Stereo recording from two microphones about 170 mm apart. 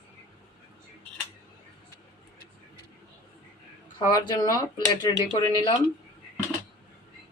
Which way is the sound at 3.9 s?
25° left (ahead or behind).